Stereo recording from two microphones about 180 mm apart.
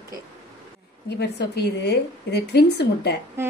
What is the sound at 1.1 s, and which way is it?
A woman's voice, 65° left (ahead or behind).